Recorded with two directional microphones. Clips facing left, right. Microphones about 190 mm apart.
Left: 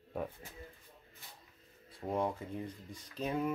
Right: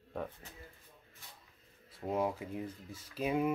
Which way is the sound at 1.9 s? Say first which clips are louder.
Right 1 dB; 5° right (ahead or behind).